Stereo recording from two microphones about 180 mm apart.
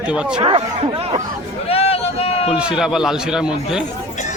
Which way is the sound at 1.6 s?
35° left (ahead or behind).